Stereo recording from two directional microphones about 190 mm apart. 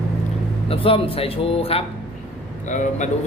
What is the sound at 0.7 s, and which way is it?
A man's voice, 30° left (ahead or behind).